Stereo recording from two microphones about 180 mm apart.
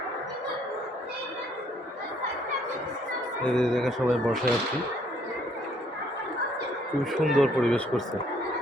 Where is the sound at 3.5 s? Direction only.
Centre (ahead or behind).